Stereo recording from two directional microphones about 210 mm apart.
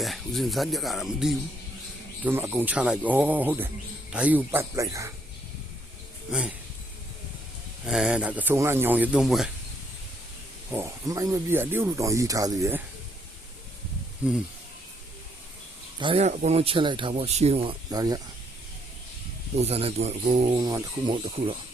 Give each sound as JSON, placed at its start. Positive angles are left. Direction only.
{"t": 0.0, "sound": "speech", "side_deg": 0}
{"t": 6.3, "sound": "speech", "side_deg": -5}
{"t": 7.9, "sound": "speech", "side_deg": -5}
{"t": 10.7, "sound": "speech", "side_deg": -10}
{"t": 14.2, "sound": "speech", "side_deg": -5}
{"t": 16.0, "sound": "speech", "side_deg": -25}
{"t": 19.5, "sound": "speech", "side_deg": -30}
{"t": 20.6, "sound": "speech", "side_deg": -15}